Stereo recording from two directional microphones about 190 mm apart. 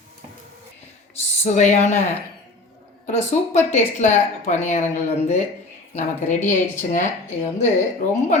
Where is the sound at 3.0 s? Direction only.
35° left (ahead or behind).